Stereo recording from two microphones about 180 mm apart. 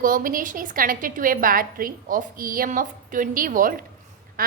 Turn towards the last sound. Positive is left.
turn(degrees=-55)  # may be behind; listen again after turning